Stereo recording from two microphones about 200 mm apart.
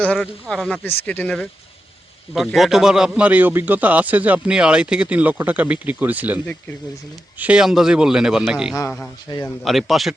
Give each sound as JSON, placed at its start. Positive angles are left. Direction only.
{"t": 0.0, "sound": "a man's voice", "side_deg": 5}
{"t": 9.3, "sound": "a man's voice", "side_deg": 20}
{"t": 9.6, "sound": "speech", "side_deg": 0}